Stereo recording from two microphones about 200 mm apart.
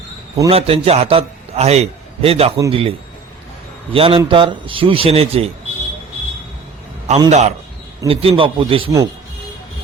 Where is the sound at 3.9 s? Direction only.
25° right (ahead or behind).